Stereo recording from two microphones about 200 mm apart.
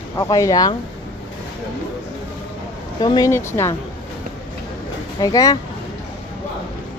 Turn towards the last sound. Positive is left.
turn(degrees=20)  # may be behind; listen again after turning